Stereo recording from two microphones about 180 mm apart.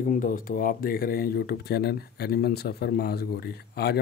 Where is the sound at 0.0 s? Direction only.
50° left (ahead or behind).